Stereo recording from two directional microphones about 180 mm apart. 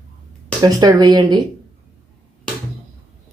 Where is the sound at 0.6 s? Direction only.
20° right (ahead or behind).